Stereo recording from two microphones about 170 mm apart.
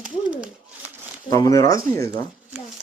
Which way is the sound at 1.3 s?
20° left (ahead or behind).